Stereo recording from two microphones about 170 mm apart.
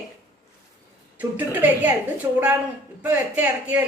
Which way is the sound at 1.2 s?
10° right (ahead or behind).